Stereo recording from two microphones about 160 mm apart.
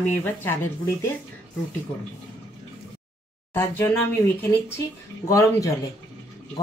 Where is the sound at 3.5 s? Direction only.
15° left (ahead or behind).